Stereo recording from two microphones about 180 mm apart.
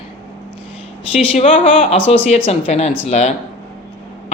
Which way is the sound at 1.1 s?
35° left (ahead or behind).